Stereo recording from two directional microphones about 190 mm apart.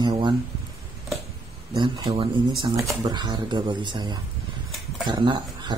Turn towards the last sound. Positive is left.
turn(degrees=-25)  # may be behind; listen again after turning